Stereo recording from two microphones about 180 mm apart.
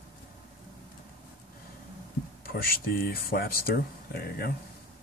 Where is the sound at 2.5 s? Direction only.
55° left (ahead or behind).